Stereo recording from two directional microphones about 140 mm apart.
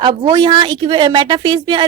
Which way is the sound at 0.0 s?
35° right (ahead or behind).